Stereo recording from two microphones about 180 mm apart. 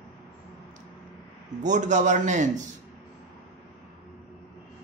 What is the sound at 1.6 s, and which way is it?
Speech, 40° right (ahead or behind).